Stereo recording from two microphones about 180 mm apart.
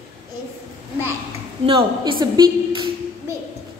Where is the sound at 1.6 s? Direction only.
30° right (ahead or behind).